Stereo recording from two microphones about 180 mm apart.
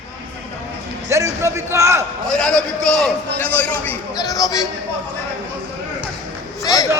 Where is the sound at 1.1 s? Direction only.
15° right (ahead or behind).